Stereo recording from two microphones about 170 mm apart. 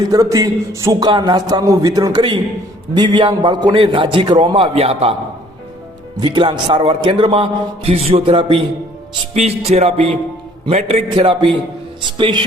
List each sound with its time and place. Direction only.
0.0 s a man's voice: 20° right (ahead or behind); by 5.1 s 35° right (ahead or behind)
6.1 s a man's voice: 30° right (ahead or behind)